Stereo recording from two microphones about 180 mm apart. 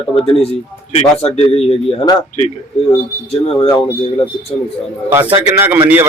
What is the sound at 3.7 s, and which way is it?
Speech, 15° left (ahead or behind).